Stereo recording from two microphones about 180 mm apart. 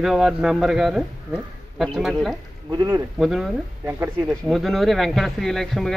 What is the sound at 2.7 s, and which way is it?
Speech, 20° right (ahead or behind).